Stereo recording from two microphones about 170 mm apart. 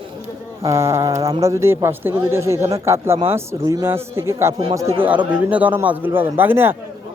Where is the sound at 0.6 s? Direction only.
15° right (ahead or behind).